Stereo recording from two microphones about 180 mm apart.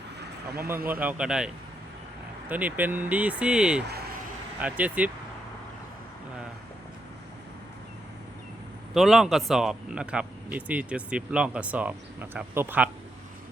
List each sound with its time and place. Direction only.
0.4 s speech: 60° right (ahead or behind)
0.9 s a man's voice: 10° right (ahead or behind)
2.5 s a man's voice: 10° right (ahead or behind)
8.9 s a man's voice: centre (ahead or behind)